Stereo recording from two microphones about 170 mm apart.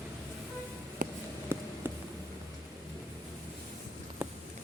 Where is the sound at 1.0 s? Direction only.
55° right (ahead or behind).